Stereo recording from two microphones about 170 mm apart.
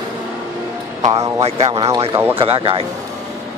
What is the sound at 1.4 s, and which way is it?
Speech, 40° right (ahead or behind).